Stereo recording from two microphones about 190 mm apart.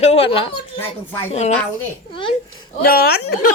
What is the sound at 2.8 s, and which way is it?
Speech, 50° left (ahead or behind).